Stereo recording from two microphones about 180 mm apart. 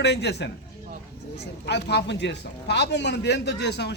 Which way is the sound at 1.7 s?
70° left (ahead or behind).